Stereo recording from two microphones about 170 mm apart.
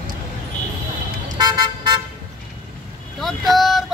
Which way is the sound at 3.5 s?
Centre (ahead or behind).